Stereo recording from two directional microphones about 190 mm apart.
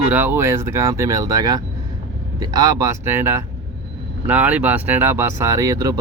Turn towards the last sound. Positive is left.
turn(degrees=-15)  # may be behind; listen again after turning